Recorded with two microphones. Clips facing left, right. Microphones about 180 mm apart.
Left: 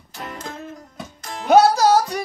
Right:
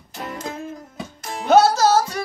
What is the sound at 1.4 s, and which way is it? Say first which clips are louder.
Music: left 1 dB; 15° left (ahead or behind).